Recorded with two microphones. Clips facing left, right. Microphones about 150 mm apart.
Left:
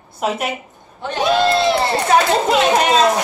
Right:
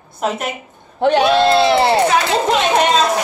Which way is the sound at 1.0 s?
75° right (ahead or behind).